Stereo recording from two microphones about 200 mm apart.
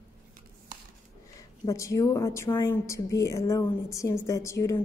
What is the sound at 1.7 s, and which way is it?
A woman's voice, 15° left (ahead or behind).